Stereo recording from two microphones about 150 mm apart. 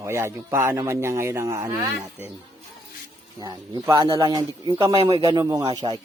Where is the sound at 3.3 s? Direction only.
30° right (ahead or behind).